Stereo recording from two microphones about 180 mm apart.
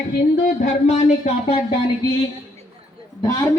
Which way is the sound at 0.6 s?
40° left (ahead or behind).